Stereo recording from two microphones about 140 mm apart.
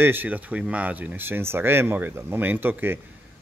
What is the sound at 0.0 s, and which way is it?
Speech, 15° right (ahead or behind).